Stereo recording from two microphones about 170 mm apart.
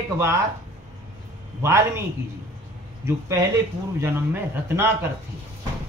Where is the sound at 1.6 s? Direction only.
15° right (ahead or behind).